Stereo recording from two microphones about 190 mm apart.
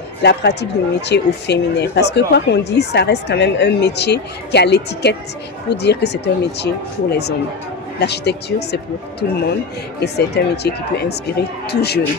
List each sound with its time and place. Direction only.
0.2 s speech: 60° left (ahead or behind)